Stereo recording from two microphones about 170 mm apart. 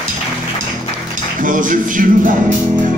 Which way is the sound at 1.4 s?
50° right (ahead or behind).